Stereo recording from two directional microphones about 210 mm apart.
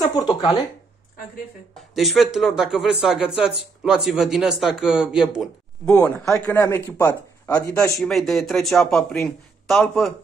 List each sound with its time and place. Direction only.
0.1 s speech: 20° left (ahead or behind)
2.0 s speech: centre (ahead or behind)
5.9 s speech: 15° left (ahead or behind)
7.8 s speech: centre (ahead or behind)